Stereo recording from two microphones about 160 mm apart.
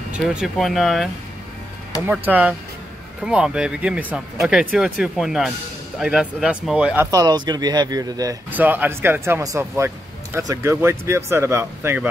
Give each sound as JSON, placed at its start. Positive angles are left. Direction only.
{"t": 0.3, "sound": "speech", "side_deg": 0}
{"t": 2.0, "sound": "speech", "side_deg": -10}
{"t": 7.1, "sound": "a man's voice", "side_deg": -25}
{"t": 8.5, "sound": "speech", "side_deg": -10}